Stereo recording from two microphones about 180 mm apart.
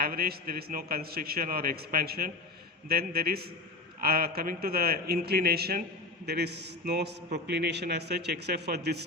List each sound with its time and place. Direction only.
0.0 s a man's voice: 55° right (ahead or behind)